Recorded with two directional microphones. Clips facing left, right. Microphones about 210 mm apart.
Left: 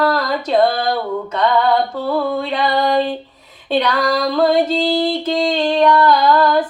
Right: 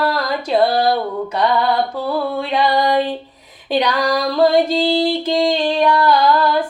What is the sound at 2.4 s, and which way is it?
Female singing, 15° right (ahead or behind).